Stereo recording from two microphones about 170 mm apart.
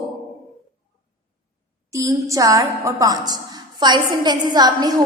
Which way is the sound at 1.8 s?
20° right (ahead or behind).